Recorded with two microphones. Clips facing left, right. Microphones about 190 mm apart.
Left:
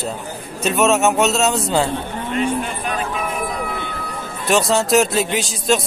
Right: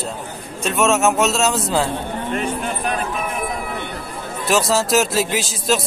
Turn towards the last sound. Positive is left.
turn(degrees=0)  # may be behind; listen again after turning